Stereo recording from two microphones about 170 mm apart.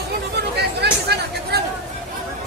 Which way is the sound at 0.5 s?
75° right (ahead or behind).